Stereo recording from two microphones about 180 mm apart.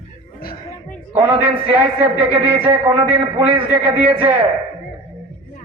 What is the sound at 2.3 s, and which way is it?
A man's voice, 30° right (ahead or behind).